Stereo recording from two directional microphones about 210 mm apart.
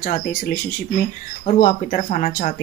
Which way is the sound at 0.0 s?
45° left (ahead or behind).